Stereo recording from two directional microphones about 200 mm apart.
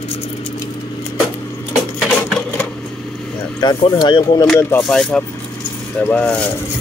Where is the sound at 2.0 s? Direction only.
5° left (ahead or behind).